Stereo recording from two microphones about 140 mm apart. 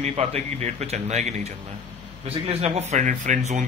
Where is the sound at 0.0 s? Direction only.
50° right (ahead or behind).